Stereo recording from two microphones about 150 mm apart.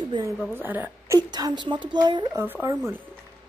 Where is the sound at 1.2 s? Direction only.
25° right (ahead or behind).